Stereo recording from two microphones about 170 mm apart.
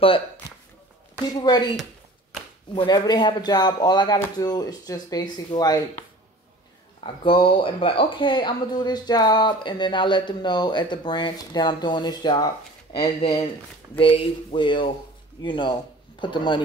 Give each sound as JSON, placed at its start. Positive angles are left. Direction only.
{"t": 2.7, "sound": "speech", "side_deg": 25}
{"t": 7.0, "sound": "speech", "side_deg": 30}